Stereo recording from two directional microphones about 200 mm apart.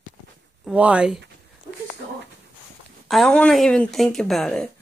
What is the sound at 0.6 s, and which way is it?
Speech, 5° right (ahead or behind).